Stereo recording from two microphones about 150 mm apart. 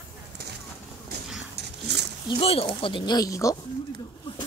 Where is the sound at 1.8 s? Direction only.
90° right.